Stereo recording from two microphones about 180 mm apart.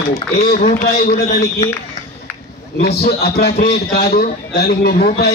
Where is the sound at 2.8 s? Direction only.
65° left (ahead or behind).